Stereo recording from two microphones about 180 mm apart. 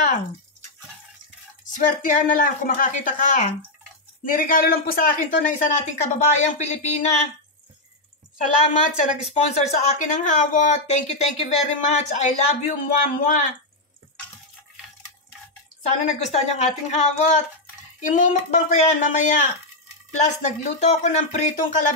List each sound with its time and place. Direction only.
1.8 s speech: 45° left (ahead or behind)
9.0 s a woman's voice: 40° left (ahead or behind)
16.1 s a woman's voice: 40° left (ahead or behind)